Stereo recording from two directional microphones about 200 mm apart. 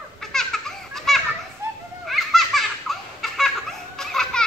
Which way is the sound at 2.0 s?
Centre (ahead or behind).